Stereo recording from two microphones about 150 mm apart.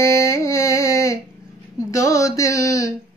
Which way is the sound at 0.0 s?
20° left (ahead or behind).